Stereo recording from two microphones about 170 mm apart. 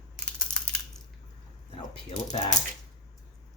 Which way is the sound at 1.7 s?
30° left (ahead or behind).